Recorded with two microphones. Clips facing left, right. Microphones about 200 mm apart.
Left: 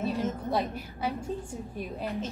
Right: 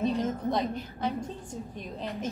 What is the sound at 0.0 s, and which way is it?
A woman's voice, centre (ahead or behind).